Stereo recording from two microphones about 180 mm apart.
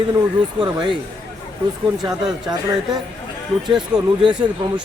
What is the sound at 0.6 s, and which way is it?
Speech, 30° right (ahead or behind).